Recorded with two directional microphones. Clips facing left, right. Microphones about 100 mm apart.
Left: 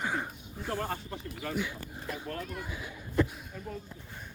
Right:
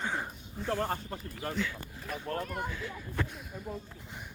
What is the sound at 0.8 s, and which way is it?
Speech, 45° right (ahead or behind).